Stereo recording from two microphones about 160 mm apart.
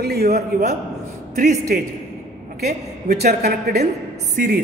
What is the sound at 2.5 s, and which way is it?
A woman's voice, 75° right (ahead or behind).